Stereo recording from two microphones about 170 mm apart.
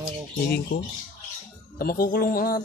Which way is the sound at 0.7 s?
65° left (ahead or behind).